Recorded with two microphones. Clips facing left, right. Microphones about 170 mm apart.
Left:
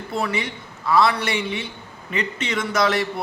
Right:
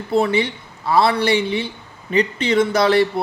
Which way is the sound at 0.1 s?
30° right (ahead or behind).